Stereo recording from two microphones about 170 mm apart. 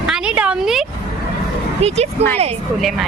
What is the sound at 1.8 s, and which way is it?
Speech, 40° right (ahead or behind).